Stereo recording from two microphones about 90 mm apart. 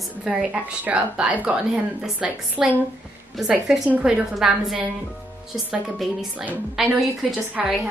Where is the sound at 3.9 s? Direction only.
15° right (ahead or behind).